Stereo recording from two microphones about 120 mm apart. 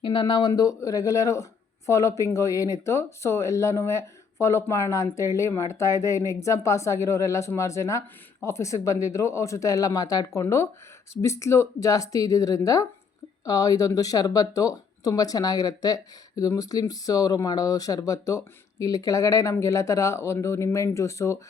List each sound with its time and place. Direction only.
0.0 s speech: 35° left (ahead or behind)